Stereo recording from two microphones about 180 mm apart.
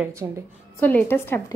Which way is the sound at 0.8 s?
10° left (ahead or behind).